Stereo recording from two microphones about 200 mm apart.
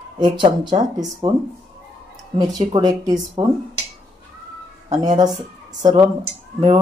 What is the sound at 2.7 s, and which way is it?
Speech, 20° right (ahead or behind).